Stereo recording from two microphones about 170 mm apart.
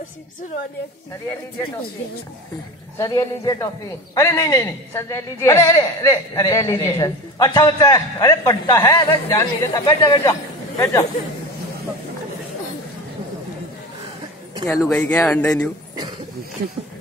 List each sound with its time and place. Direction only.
3.0 s a man's voice: 20° left (ahead or behind)
14.7 s speech: 15° left (ahead or behind)